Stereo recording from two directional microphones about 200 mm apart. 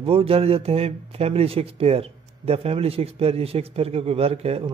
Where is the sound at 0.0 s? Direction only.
30° right (ahead or behind).